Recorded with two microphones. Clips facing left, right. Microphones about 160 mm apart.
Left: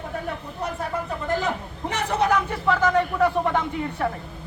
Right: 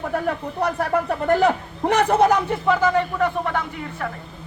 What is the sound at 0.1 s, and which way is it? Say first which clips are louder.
Speech: right 8 dB; 70° right (ahead or behind).